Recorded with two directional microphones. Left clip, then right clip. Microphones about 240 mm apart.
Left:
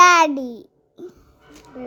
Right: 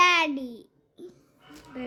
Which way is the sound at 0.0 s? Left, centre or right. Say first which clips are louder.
Left 9 dB; left.